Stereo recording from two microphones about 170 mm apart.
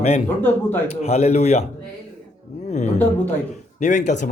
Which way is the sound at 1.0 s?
40° left (ahead or behind).